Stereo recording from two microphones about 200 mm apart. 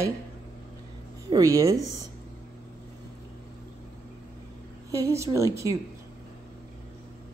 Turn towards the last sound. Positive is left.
turn(degrees=-15)  # may be behind; listen again after turning